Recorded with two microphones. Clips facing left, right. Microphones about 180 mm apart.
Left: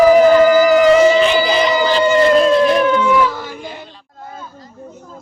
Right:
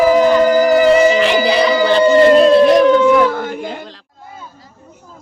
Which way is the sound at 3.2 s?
55° right (ahead or behind).